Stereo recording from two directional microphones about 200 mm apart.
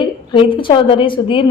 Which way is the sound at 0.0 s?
25° left (ahead or behind).